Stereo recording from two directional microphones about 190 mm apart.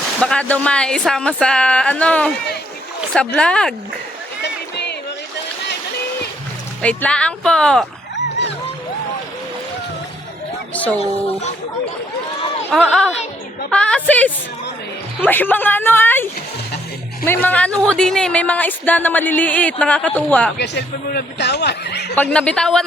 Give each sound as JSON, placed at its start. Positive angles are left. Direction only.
{"t": 0.2, "sound": "speech", "side_deg": 5}
{"t": 4.4, "sound": "a sound", "side_deg": 60}
{"t": 6.8, "sound": "speech", "side_deg": 5}
{"t": 12.7, "sound": "a woman's voice", "side_deg": 0}
{"t": 20.6, "sound": "speech", "side_deg": 60}
{"t": 22.1, "sound": "speech", "side_deg": 5}